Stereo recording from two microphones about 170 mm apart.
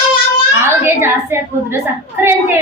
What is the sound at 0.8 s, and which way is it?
Speech, 15° right (ahead or behind).